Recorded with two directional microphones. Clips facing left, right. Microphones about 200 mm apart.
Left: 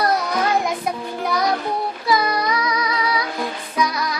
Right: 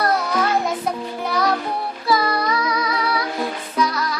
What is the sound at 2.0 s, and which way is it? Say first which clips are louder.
Child singing: right 1 dB; 15° left (ahead or behind).